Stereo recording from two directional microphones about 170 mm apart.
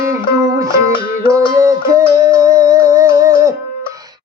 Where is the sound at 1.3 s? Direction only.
15° right (ahead or behind).